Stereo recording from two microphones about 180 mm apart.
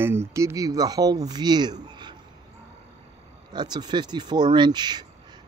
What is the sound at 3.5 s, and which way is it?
Speech, 25° right (ahead or behind).